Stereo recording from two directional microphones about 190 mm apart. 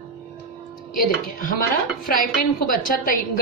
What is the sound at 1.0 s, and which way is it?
A woman's voice, 45° left (ahead or behind).